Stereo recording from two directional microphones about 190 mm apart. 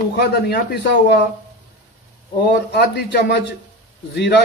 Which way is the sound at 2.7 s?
60° left (ahead or behind).